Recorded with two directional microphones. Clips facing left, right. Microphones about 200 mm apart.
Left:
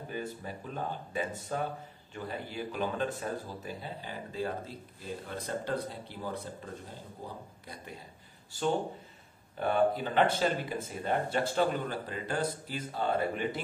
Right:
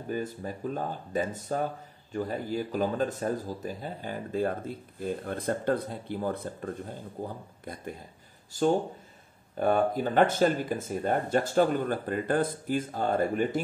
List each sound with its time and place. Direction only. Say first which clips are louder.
0.1 s speech: right 6 dB; 40° right (ahead or behind)
9.6 s speech: right 3 dB; 45° right (ahead or behind)